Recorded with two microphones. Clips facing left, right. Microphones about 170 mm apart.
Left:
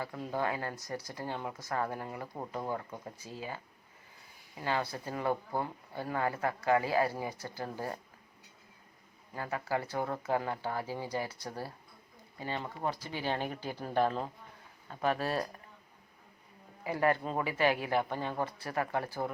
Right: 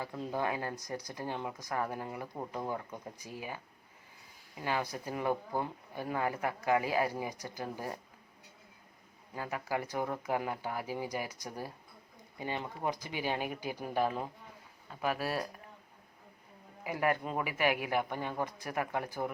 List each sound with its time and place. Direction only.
0.0 s speech: 20° right (ahead or behind)
4.6 s speech: 15° right (ahead or behind)
9.3 s speech: 15° right (ahead or behind)
16.8 s speech: 15° right (ahead or behind)